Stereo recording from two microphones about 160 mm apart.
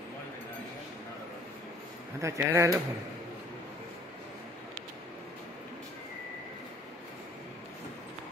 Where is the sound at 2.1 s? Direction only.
20° right (ahead or behind).